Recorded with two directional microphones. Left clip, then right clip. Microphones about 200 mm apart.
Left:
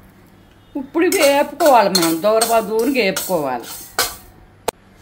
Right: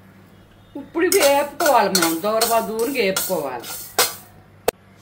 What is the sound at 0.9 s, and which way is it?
Speech, 35° left (ahead or behind).